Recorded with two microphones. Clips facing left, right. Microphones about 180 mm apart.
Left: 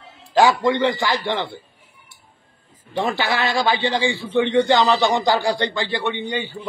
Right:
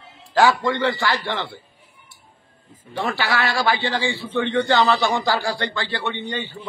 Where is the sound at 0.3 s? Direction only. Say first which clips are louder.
Left 2 dB; 15° left (ahead or behind).